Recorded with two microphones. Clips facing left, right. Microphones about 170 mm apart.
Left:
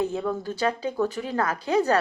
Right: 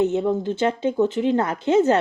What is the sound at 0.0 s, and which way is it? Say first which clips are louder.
A woman's voice: right 6 dB; 25° right (ahead or behind).